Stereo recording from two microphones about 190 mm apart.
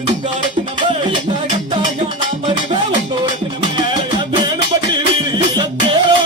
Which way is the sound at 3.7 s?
25° right (ahead or behind).